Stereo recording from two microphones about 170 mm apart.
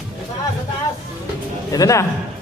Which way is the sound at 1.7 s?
20° left (ahead or behind).